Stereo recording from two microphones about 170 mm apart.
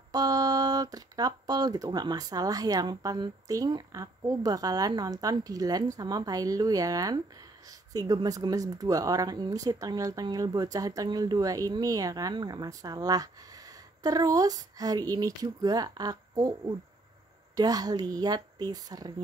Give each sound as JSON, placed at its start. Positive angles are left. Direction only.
{"t": 0.1, "sound": "speech", "side_deg": -20}